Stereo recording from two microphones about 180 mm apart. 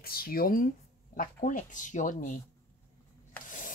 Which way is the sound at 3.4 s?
45° left (ahead or behind).